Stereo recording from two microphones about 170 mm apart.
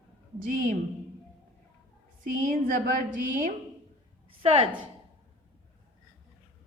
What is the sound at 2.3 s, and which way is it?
A woman's voice, 55° right (ahead or behind).